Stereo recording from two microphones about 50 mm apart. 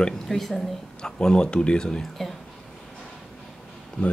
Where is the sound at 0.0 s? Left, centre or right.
Centre.